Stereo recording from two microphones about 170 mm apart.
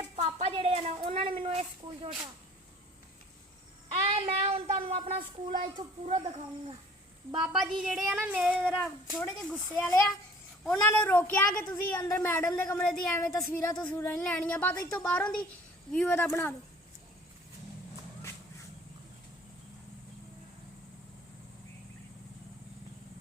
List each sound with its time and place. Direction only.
0.0 s speech: 40° right (ahead or behind)
3.9 s a child's voice: 40° right (ahead or behind)
7.3 s speech: 5° right (ahead or behind)
9.1 s a woman's voice: 10° left (ahead or behind)